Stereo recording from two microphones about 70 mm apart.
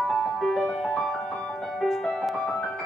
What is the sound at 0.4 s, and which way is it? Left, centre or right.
Music, centre.